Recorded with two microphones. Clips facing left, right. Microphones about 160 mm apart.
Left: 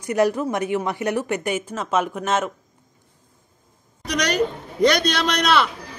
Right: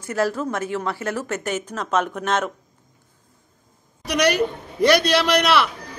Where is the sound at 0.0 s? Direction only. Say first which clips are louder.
Left 3 dB; 15° left (ahead or behind).